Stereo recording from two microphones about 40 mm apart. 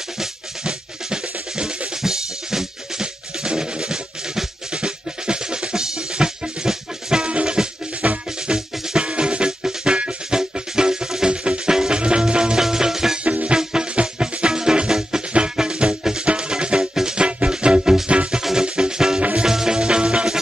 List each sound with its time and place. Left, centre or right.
0.7 s drum: right
4.7 s drum kit: right
6.4 s music: centre
7.2 s music: right
8.5 s music: right
13.2 s music: right